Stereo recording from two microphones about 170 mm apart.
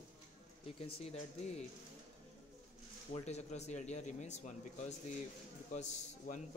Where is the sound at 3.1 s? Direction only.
40° left (ahead or behind).